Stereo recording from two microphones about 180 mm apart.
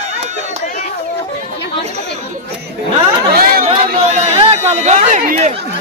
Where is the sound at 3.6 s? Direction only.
35° right (ahead or behind).